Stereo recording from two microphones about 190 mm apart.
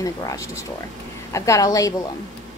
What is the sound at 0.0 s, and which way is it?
A woman's voice, 15° left (ahead or behind).